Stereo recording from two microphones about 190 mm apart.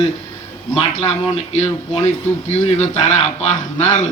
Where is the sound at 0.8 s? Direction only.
35° left (ahead or behind).